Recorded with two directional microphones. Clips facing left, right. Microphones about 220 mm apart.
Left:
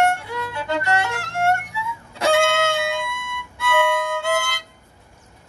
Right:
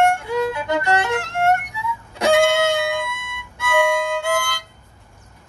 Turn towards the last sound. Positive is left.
turn(degrees=20)  # may be behind; listen again after turning